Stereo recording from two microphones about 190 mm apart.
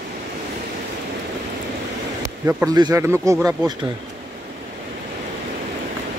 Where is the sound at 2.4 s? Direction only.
20° right (ahead or behind).